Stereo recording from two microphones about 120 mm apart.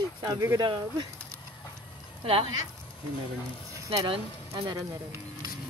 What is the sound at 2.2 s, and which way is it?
Speech, 50° right (ahead or behind).